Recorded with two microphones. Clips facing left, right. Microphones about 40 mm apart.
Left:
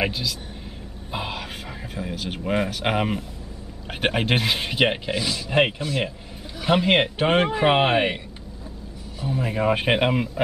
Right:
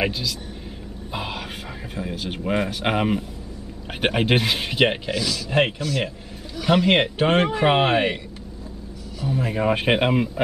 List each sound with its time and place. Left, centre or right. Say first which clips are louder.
0.0 s speech: right 1 dB; centre
5.1 s speech: right 1 dB; left
5.5 s speech: left 1 dB; centre
5.8 s speech: right 1 dB; left
6.6 s speech: right 1 dB; centre
9.3 s speech: even; centre